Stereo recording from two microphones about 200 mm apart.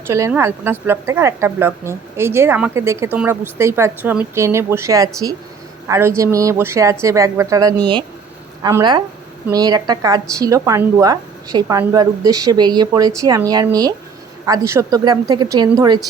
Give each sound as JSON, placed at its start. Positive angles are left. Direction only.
{"t": 0.1, "sound": "a woman's voice", "side_deg": -15}